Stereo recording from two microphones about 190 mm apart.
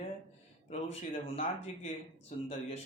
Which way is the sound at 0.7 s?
35° left (ahead or behind).